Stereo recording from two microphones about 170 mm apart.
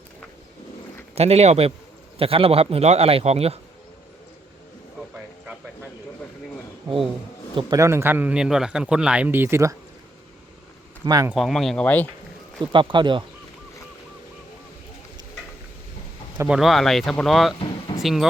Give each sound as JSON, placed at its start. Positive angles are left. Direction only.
{"t": 1.1, "sound": "speech", "side_deg": -40}
{"t": 7.5, "sound": "speech", "side_deg": -20}
{"t": 11.0, "sound": "speech", "side_deg": -20}
{"t": 11.3, "sound": "speech", "side_deg": 0}
{"t": 12.7, "sound": "speech", "side_deg": -30}
{"t": 16.5, "sound": "speech", "side_deg": 0}